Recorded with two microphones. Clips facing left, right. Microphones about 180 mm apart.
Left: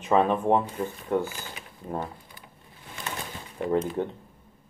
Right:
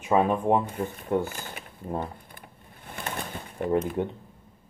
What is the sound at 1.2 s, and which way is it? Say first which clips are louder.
Speech: right 1 dB; 50° right (ahead or behind).